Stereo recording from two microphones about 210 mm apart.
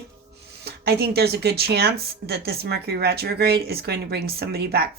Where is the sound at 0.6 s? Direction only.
50° right (ahead or behind).